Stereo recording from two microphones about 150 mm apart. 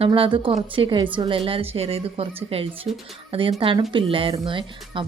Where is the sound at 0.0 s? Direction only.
35° right (ahead or behind).